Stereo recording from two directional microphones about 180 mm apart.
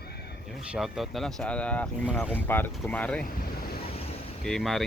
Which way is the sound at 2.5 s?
10° left (ahead or behind).